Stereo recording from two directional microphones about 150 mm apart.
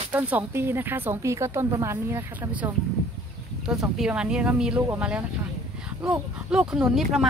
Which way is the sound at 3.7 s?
5° right (ahead or behind).